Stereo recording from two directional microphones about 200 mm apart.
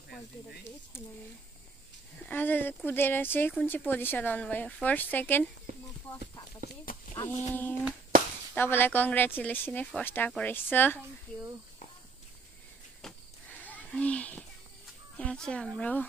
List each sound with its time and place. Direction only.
0.9 s speech: 10° left (ahead or behind)
2.2 s speech: 10° left (ahead or behind)
6.9 s speech: 45° left (ahead or behind)
7.4 s speech: 10° left (ahead or behind)
13.0 s a sound: 5° left (ahead or behind)
15.1 s speech: 5° left (ahead or behind)